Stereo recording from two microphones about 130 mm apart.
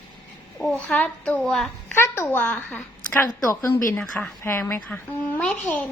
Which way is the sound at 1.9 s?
20° left (ahead or behind).